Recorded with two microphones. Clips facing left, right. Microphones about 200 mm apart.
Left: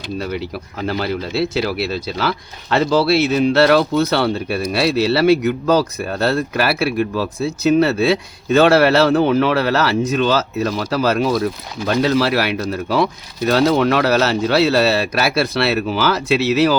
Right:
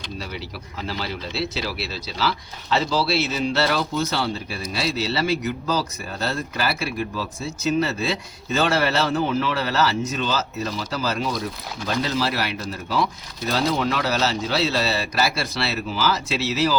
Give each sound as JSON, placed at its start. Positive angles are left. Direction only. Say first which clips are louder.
{"t": 0.2, "sound": "speech", "louder": "left 11 dB", "side_deg": 55}